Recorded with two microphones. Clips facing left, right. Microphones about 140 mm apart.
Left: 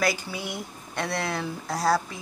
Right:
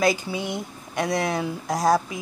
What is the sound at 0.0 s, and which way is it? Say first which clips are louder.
Speech: right 5 dB; 20° right (ahead or behind).